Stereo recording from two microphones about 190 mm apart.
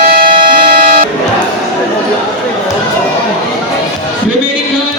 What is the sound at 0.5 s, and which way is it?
Music, 50° right (ahead or behind).